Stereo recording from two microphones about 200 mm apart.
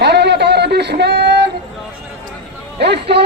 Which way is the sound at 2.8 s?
55° right (ahead or behind).